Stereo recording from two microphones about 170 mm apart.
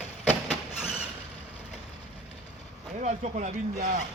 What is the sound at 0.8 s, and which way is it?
Vehicle, 5° right (ahead or behind).